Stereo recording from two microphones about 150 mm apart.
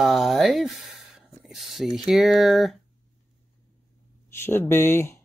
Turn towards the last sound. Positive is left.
turn(degrees=15)  # may be behind; listen again after turning